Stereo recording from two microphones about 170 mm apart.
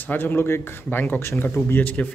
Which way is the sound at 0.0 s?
10° left (ahead or behind).